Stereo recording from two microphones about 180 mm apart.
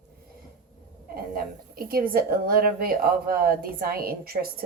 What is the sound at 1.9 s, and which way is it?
A woman's voice, 55° right (ahead or behind).